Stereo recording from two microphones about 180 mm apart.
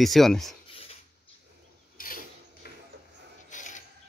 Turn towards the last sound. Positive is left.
turn(degrees=45)  # may be behind; listen again after turning